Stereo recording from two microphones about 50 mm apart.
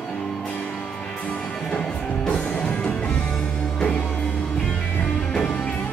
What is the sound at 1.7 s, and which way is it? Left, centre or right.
Music, left.